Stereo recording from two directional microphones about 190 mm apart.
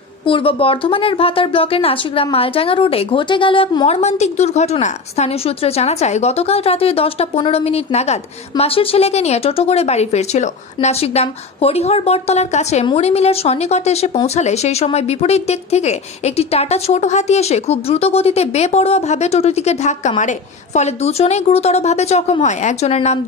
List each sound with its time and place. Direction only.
0.2 s a woman's voice: 30° left (ahead or behind)